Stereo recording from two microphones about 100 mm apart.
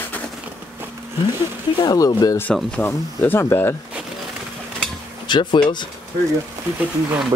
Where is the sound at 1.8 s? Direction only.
40° left (ahead or behind).